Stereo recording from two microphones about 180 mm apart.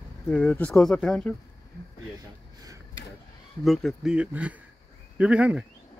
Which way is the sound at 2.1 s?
20° right (ahead or behind).